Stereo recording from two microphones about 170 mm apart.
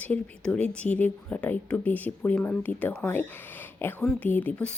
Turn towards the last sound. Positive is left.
turn(degrees=10)  # may be behind; listen again after turning